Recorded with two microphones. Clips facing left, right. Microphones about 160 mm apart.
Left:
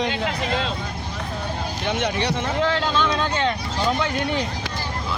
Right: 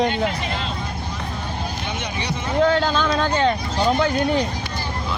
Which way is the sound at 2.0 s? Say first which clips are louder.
Left 6 dB; 90° left.